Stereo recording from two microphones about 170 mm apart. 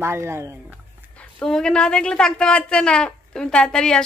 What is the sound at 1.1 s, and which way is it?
A woman's voice, 5° left (ahead or behind).